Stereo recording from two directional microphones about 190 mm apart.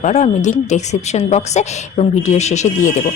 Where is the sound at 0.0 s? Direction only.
35° left (ahead or behind).